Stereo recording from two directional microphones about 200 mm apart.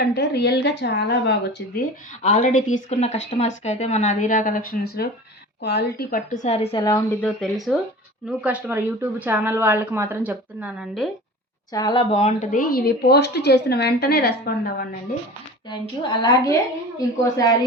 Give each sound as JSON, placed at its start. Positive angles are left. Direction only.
{"t": 0.0, "sound": "a woman's voice", "side_deg": 55}
{"t": 2.2, "sound": "a woman's voice", "side_deg": 40}
{"t": 7.2, "sound": "a woman's voice", "side_deg": 5}
{"t": 11.7, "sound": "speech", "side_deg": 20}
{"t": 15.7, "sound": "speech", "side_deg": 20}